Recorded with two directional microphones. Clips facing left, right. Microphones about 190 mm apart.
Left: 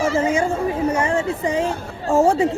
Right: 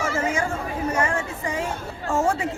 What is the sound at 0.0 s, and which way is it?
A man's voice, 30° left (ahead or behind).